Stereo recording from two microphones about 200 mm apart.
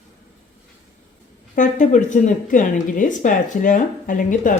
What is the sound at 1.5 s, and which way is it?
Speech, 40° left (ahead or behind).